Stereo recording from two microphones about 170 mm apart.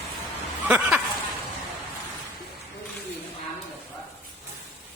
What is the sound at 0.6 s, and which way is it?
Speech, 5° right (ahead or behind).